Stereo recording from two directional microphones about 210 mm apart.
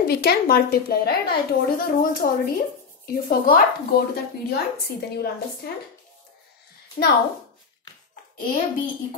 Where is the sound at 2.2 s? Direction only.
40° left (ahead or behind).